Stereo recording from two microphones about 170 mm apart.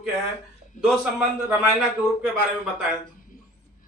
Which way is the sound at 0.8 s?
50° left (ahead or behind).